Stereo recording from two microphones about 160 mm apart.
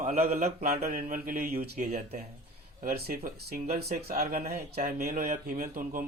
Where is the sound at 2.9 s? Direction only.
75° right (ahead or behind).